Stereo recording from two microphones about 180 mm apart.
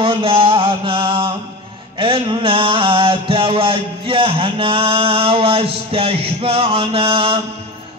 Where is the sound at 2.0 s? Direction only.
30° right (ahead or behind).